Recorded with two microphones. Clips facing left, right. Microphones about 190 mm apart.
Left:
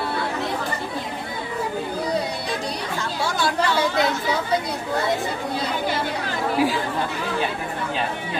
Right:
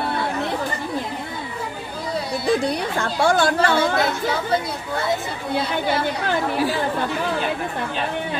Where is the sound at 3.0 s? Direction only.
55° right (ahead or behind).